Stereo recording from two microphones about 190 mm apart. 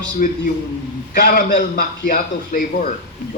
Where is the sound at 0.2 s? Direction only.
45° left (ahead or behind).